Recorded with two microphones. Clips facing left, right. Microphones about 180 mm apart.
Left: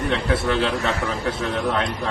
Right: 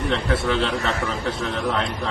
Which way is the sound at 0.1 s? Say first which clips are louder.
Even; centre (ahead or behind).